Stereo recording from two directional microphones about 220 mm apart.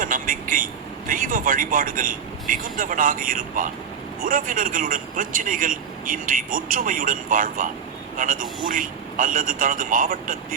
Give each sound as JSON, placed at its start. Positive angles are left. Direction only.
{"t": 0.0, "sound": "vehicle", "side_deg": -40}
{"t": 4.2, "sound": "a man's voice", "side_deg": -40}